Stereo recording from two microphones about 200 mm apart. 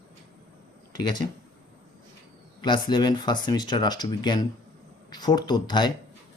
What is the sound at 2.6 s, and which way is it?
Speech, 20° left (ahead or behind).